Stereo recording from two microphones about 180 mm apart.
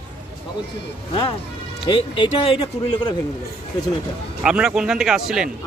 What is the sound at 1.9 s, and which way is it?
Speech, 25° left (ahead or behind).